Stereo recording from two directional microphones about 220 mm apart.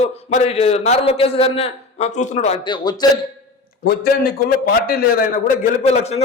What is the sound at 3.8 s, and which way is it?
A man's voice, 45° left (ahead or behind).